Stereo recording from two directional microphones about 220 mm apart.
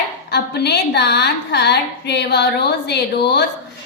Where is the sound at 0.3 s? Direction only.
50° left (ahead or behind).